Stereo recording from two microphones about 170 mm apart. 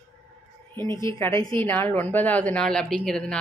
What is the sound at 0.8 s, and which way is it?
Speech, 25° right (ahead or behind).